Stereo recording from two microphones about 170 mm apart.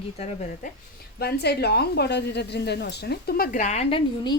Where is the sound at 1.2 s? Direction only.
70° left (ahead or behind).